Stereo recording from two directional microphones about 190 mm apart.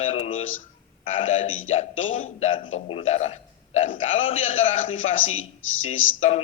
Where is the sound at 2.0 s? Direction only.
90° left.